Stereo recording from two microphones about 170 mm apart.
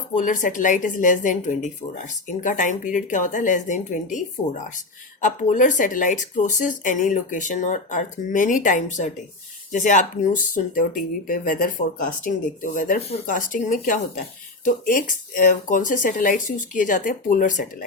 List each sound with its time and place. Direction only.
0.2 s speech: 50° left (ahead or behind)